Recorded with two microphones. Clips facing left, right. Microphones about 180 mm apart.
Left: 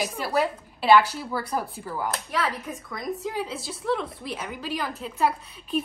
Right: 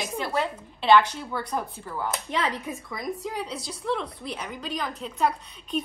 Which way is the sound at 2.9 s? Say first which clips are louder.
Left 3 dB; centre (ahead or behind).